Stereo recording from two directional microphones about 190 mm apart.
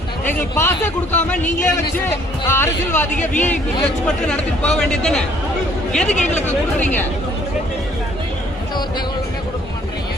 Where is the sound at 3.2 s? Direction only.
40° left (ahead or behind).